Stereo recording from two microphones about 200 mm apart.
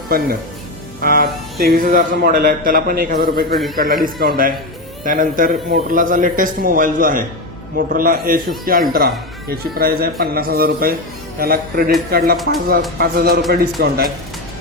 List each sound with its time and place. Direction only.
1.0 s a man's voice: 50° right (ahead or behind)